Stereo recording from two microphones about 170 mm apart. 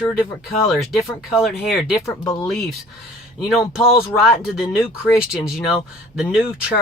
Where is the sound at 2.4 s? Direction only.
5° left (ahead or behind).